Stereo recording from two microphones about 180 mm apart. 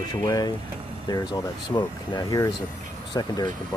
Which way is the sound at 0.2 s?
20° left (ahead or behind).